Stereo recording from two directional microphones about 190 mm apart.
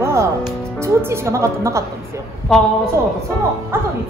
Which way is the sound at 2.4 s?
5° left (ahead or behind).